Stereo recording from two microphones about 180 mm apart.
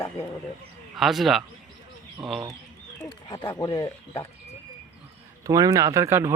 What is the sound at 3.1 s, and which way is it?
Speech, 25° left (ahead or behind).